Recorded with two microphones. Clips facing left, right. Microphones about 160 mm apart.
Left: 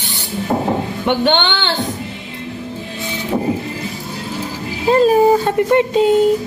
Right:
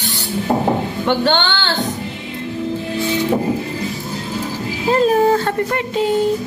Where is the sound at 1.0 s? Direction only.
20° left (ahead or behind).